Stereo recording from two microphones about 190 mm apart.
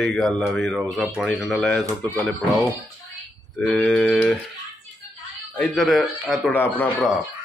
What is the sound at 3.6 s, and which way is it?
Speech, 5° left (ahead or behind).